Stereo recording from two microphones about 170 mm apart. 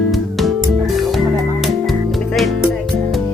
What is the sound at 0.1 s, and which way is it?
Music, centre (ahead or behind).